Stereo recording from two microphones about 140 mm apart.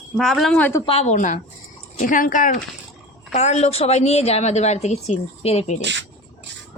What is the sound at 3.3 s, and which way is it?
A woman's voice, 55° left (ahead or behind).